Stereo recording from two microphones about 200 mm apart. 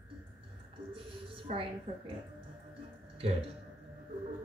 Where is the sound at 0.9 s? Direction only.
25° right (ahead or behind).